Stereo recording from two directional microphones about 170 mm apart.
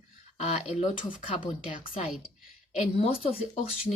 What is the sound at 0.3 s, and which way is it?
Speech, 40° left (ahead or behind).